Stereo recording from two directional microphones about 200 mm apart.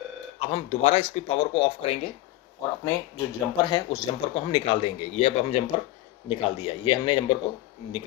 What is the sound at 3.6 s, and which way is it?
Speech, 25° left (ahead or behind).